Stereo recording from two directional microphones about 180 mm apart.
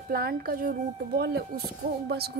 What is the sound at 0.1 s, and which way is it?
Speech, 55° right (ahead or behind).